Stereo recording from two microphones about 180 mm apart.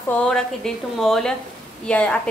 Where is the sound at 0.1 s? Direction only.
5° left (ahead or behind).